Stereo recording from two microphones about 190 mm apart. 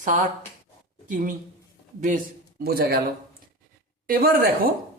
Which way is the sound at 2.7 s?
55° right (ahead or behind).